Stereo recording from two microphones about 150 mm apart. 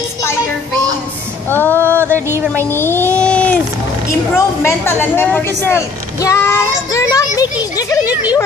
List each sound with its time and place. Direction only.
1.5 s music: 15° left (ahead or behind)
2.7 s a sound: 15° left (ahead or behind)
4.6 s a woman's voice: 15° left (ahead or behind)
8.1 s speech: 10° right (ahead or behind)